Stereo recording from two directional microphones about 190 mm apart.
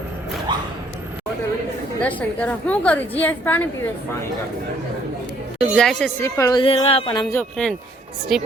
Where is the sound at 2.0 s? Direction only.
10° left (ahead or behind).